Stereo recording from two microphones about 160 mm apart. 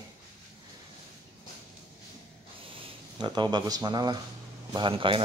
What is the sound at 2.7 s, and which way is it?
A man's voice, 30° right (ahead or behind).